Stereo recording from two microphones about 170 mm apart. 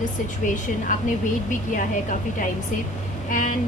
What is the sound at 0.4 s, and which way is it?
A woman's voice, 50° left (ahead or behind).